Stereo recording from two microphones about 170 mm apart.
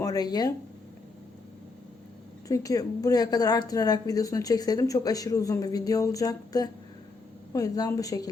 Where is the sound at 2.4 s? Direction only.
20° left (ahead or behind).